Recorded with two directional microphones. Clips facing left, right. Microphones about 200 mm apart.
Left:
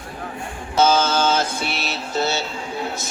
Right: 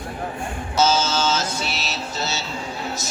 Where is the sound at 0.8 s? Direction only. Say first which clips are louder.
Left 3 dB; 55° left (ahead or behind).